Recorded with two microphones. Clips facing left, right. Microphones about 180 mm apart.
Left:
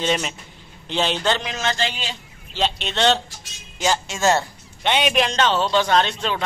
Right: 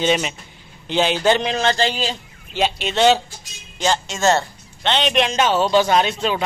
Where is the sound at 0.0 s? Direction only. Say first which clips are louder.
Right 3 dB; 5° right (ahead or behind).